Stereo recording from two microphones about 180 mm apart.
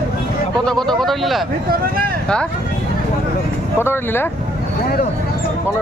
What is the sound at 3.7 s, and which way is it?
Speech, 10° left (ahead or behind).